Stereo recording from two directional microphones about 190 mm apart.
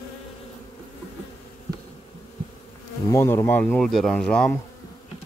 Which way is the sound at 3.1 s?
15° left (ahead or behind).